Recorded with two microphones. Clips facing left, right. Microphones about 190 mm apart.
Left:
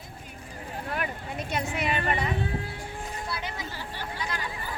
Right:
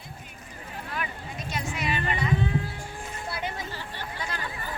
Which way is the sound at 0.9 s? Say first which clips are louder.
Left 2 dB; 55° left (ahead or behind).